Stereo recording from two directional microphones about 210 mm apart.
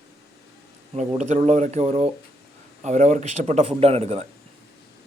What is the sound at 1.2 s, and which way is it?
Speech, 35° right (ahead or behind).